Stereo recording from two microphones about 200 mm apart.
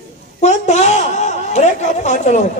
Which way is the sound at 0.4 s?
35° left (ahead or behind).